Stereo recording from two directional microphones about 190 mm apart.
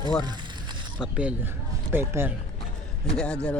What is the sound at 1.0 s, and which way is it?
Speech, 5° right (ahead or behind).